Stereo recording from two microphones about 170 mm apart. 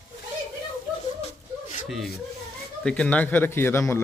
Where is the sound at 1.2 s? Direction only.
45° left (ahead or behind).